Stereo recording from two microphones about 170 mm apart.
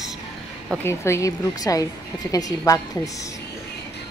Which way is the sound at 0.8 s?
15° left (ahead or behind).